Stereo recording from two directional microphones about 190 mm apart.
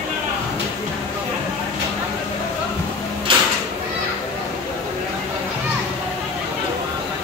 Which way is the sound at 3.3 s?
25° right (ahead or behind).